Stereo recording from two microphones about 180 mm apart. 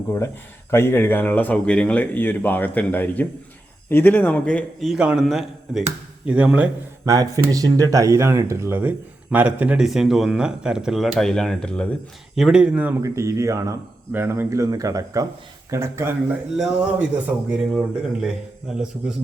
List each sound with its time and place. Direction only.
0.7 s speech: 15° left (ahead or behind); by 6.7 s 5° right (ahead or behind)
7.0 s speech: 20° right (ahead or behind); by 19.1 s 5° right (ahead or behind)